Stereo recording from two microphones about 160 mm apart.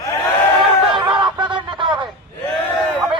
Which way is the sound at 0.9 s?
30° right (ahead or behind).